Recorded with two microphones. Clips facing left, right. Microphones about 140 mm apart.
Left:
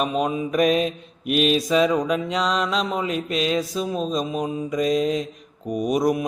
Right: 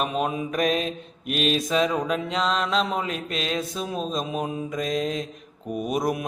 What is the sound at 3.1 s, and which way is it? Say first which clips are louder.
Mantra: left 5 dB; 45° right (ahead or behind).